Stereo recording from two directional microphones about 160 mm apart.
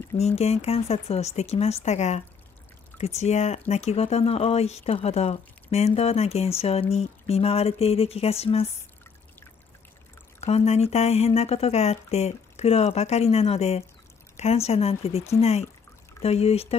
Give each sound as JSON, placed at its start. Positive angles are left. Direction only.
{"t": 0.2, "sound": "speech", "side_deg": 40}
{"t": 10.4, "sound": "speech", "side_deg": 40}